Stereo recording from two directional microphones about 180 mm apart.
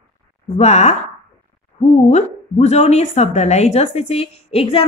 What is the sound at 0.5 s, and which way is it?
A woman's voice, 40° left (ahead or behind).